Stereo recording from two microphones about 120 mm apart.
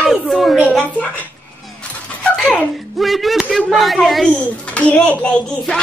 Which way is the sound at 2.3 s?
10° left (ahead or behind).